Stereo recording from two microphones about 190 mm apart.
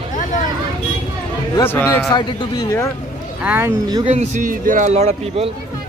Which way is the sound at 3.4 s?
10° right (ahead or behind).